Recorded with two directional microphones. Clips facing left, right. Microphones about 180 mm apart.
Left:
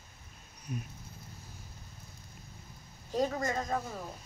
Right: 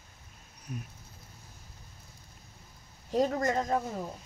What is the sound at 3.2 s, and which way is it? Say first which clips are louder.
Speech: right 4 dB; 50° right (ahead or behind).